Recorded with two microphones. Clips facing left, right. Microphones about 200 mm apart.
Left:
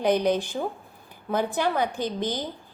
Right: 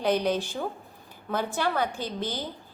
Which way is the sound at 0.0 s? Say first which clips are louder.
Left 3 dB; 15° left (ahead or behind).